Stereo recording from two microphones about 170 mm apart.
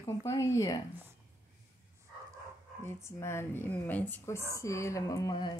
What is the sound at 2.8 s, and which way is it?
Speech, 15° left (ahead or behind).